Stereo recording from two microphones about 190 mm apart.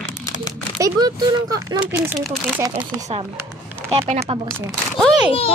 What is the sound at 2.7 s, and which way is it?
Speech, 35° right (ahead or behind).